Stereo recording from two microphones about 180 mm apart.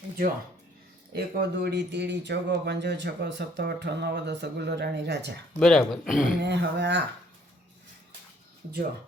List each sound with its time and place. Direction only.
1.1 s speech: 65° right (ahead or behind)
5.5 s speech: centre (ahead or behind)
6.4 s speech: 70° right (ahead or behind)